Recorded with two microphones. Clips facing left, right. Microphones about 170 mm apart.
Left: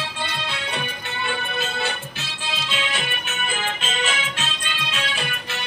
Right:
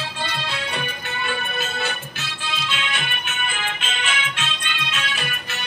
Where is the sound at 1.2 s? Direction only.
30° left (ahead or behind).